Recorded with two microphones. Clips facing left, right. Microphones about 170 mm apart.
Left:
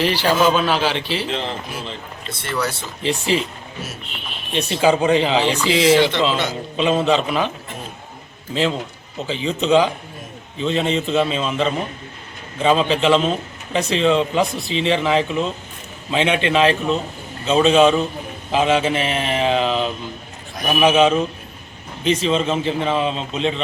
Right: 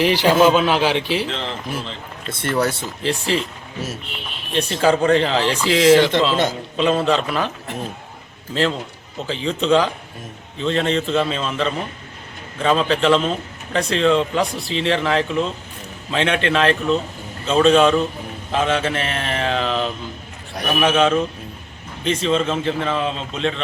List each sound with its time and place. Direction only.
0.0 s a man's voice: 15° right (ahead or behind)
1.3 s a man's voice: 15° left (ahead or behind)
2.4 s speech: 50° right (ahead or behind)
3.0 s speech: centre (ahead or behind)
4.5 s speech: 5° left (ahead or behind)
9.2 s a man's voice: centre (ahead or behind)